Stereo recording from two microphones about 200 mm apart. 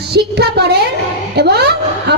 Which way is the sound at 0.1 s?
55° right (ahead or behind).